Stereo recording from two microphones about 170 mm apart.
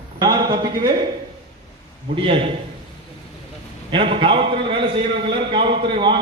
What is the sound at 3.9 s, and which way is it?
A man's voice, 30° right (ahead or behind).